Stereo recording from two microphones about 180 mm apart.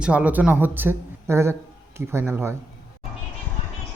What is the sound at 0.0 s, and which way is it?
Speech, 5° right (ahead or behind).